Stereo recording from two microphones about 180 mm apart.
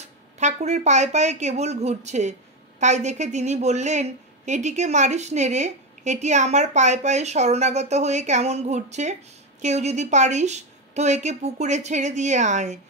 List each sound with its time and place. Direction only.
0.0 s a woman's voice: 40° right (ahead or behind)